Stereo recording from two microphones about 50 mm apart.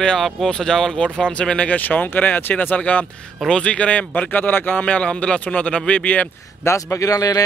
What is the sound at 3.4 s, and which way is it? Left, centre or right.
Speech, left.